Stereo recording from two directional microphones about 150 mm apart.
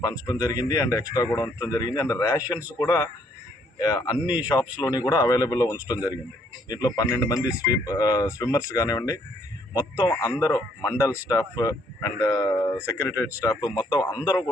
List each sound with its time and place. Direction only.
0.0 s a man's voice: 25° left (ahead or behind)